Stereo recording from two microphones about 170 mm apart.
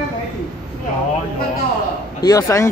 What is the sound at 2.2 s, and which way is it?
Speech, 20° left (ahead or behind).